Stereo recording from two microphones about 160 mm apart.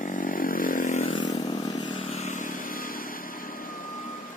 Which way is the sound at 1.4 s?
30° left (ahead or behind).